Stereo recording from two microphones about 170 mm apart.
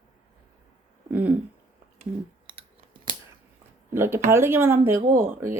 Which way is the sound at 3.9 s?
15° right (ahead or behind).